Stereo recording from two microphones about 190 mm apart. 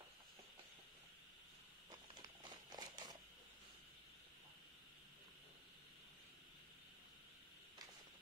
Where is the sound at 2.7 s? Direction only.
20° right (ahead or behind).